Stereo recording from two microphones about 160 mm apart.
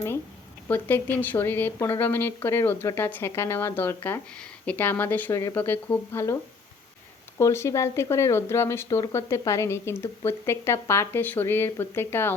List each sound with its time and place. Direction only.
0.7 s speech: 10° left (ahead or behind)
7.3 s speech: 15° left (ahead or behind)